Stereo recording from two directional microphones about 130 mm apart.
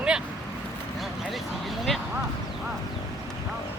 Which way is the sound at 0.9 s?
Centre (ahead or behind).